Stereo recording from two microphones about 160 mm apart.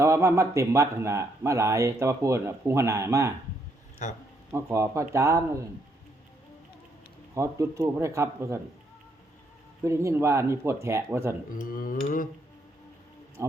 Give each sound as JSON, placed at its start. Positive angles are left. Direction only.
{"t": 0.0, "sound": "speech", "side_deg": -15}
{"t": 4.0, "sound": "speech", "side_deg": 50}
{"t": 4.5, "sound": "speech", "side_deg": -15}
{"t": 7.3, "sound": "speech", "side_deg": -20}
{"t": 9.8, "sound": "speech", "side_deg": -15}
{"t": 11.6, "sound": "a sound", "side_deg": 60}